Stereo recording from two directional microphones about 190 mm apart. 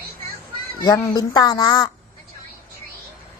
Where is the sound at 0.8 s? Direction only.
20° left (ahead or behind).